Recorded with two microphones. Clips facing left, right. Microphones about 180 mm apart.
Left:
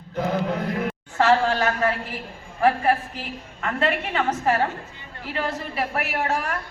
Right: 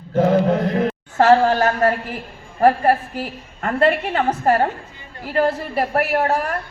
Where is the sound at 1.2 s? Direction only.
45° right (ahead or behind).